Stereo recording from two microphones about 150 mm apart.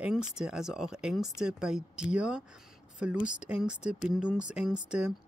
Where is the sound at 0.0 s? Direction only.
5° right (ahead or behind).